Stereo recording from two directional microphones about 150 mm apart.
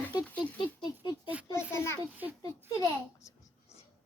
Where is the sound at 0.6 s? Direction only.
30° left (ahead or behind).